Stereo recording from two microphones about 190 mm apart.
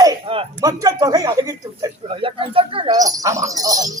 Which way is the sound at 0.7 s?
20° right (ahead or behind).